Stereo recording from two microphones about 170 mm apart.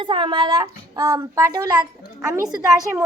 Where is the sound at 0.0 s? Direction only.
30° right (ahead or behind).